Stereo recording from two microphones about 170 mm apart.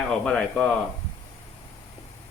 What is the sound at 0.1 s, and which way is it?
Speech, 5° left (ahead or behind).